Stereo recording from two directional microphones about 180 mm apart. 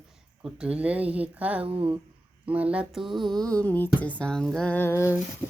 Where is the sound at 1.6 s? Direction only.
20° right (ahead or behind).